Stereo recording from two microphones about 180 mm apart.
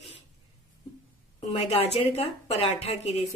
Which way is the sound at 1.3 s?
35° left (ahead or behind).